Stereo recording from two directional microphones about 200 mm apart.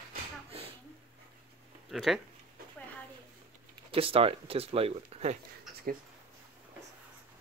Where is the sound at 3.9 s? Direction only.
30° right (ahead or behind).